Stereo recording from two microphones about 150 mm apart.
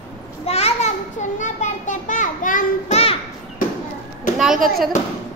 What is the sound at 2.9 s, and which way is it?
Children playing, 40° left (ahead or behind).